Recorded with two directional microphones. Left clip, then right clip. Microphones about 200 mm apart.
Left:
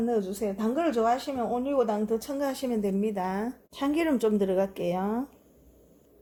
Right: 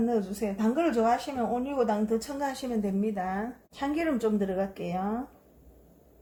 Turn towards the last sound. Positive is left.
turn(degrees=45)  # may be behind; listen again after turning